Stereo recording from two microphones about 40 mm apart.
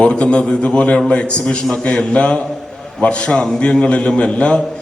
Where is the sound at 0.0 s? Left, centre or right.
Left.